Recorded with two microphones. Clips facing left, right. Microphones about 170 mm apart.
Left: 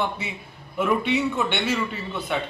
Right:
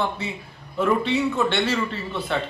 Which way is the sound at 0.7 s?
5° left (ahead or behind).